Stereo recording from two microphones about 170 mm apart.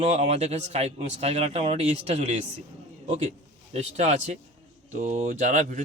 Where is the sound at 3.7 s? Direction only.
40° right (ahead or behind).